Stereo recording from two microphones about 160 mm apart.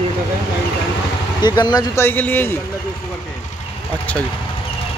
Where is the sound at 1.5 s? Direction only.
25° left (ahead or behind).